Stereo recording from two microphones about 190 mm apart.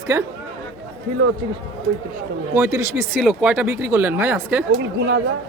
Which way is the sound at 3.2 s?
5° right (ahead or behind).